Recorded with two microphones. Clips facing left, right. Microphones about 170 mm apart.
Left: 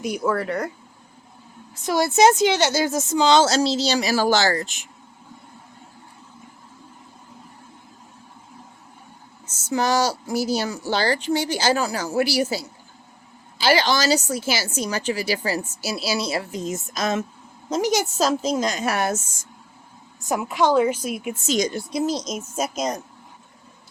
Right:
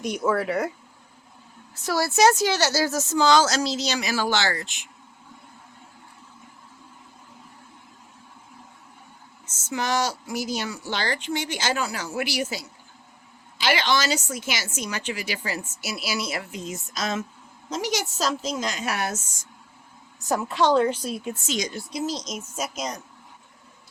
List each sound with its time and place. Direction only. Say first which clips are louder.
0.0 s speech: left 1 dB; centre (ahead or behind)
1.8 s a woman's voice: left 3 dB; 20° left (ahead or behind); by 4.9 s 40° left (ahead or behind)
9.6 s a woman's voice: left 5 dB; 40° left (ahead or behind)
20.2 s a woman's voice: left 1 dB; 10° left (ahead or behind)
21.4 s a woman's voice: left 11 dB; 45° left (ahead or behind)